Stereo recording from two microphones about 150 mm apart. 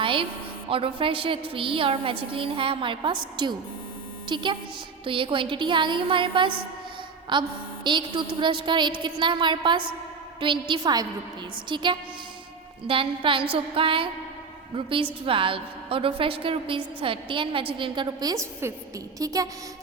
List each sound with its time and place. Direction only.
0.0 s music: 35° right (ahead or behind)
0.7 s a woman's voice: 35° right (ahead or behind)
19.2 s a sound: 25° right (ahead or behind)